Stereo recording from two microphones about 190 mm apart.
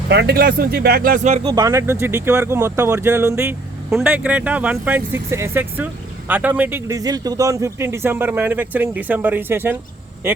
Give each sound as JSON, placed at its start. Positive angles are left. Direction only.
{"t": 0.1, "sound": "speech", "side_deg": -60}
{"t": 1.5, "sound": "speech", "side_deg": -20}